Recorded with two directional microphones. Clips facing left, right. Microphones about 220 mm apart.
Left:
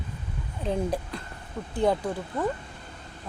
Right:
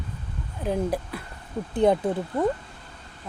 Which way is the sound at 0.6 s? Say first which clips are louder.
Right 2 dB; 10° right (ahead or behind).